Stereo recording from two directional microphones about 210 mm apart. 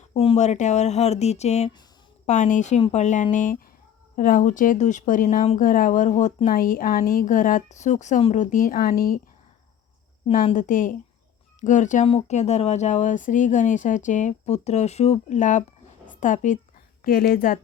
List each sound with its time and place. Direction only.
0.1 s speech: 30° left (ahead or behind)
10.4 s a woman's voice: 35° left (ahead or behind)